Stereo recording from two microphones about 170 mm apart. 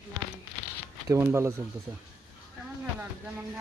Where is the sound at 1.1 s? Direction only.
15° right (ahead or behind).